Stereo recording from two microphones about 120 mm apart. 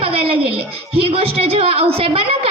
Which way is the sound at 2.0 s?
55° right (ahead or behind).